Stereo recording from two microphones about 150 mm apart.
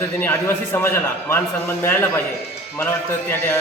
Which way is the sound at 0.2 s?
15° left (ahead or behind).